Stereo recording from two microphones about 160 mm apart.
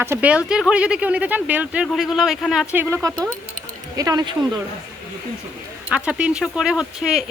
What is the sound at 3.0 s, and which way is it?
Speech, 20° right (ahead or behind).